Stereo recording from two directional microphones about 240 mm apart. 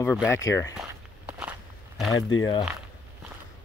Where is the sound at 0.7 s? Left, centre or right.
Centre.